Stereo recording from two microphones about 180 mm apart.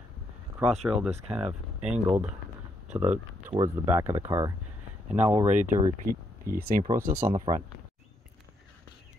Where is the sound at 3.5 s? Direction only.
20° right (ahead or behind).